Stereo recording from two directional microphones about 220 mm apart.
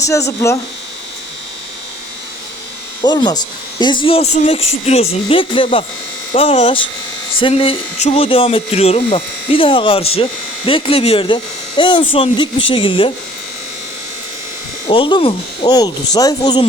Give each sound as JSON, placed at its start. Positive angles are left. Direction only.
{"t": 0.0, "sound": "speech", "side_deg": 15}
{"t": 3.0, "sound": "speech", "side_deg": 20}
{"t": 14.8, "sound": "speech", "side_deg": 20}